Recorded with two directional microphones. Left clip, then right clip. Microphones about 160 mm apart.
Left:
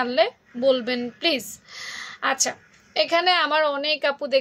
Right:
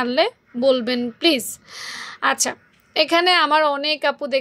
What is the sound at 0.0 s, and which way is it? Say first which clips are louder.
A woman's voice: right 2 dB; 45° right (ahead or behind).